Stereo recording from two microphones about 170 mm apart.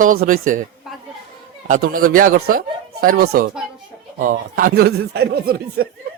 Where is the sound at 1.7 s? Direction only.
55° right (ahead or behind).